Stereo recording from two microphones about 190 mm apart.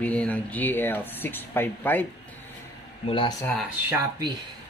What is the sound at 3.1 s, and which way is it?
Speech, 25° left (ahead or behind).